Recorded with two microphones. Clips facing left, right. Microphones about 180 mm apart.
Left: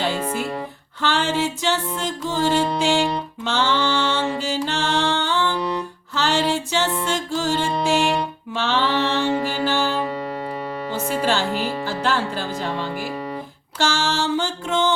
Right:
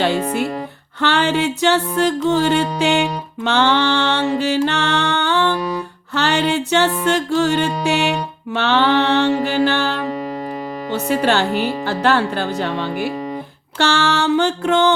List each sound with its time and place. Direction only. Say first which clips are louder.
1.0 s music: right 4 dB; 65° right (ahead or behind)
8.5 s mantra: right 6 dB; 65° right (ahead or behind)
10.9 s music: right 5 dB; 65° right (ahead or behind)